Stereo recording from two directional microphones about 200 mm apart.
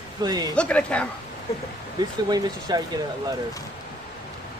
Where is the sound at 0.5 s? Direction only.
5° left (ahead or behind).